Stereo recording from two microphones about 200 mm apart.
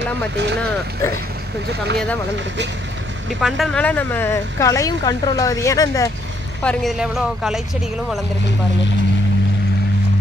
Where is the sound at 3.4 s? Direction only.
Centre (ahead or behind); by 6.1 s 15° left (ahead or behind).